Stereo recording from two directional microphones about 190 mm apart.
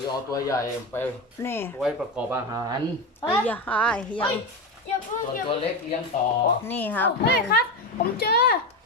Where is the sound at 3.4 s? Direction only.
10° left (ahead or behind).